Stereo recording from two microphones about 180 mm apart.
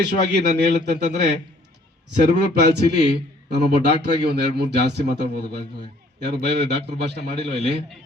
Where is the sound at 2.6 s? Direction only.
65° right (ahead or behind).